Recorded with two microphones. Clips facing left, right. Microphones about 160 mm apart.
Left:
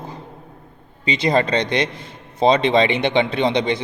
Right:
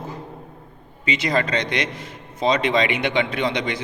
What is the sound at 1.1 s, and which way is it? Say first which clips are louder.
A man's voice: left 4 dB; 30° left (ahead or behind).